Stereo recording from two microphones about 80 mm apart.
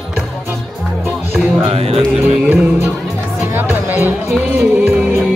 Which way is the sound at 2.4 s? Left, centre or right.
Right.